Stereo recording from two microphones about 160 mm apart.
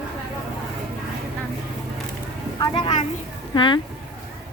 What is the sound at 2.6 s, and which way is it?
A child's voice, 35° left (ahead or behind).